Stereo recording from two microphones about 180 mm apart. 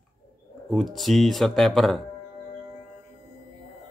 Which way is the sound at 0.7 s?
Centre (ahead or behind).